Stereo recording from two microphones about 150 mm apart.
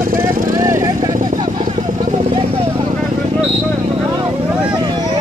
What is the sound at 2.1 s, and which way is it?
Vehicle, 40° right (ahead or behind).